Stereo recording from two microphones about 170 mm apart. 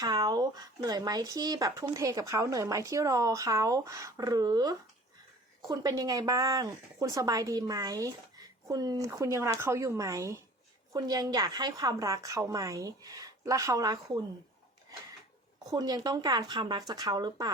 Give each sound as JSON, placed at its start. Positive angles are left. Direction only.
{"t": 0.0, "sound": "a woman's voice", "side_deg": -25}
{"t": 15.7, "sound": "speech", "side_deg": -25}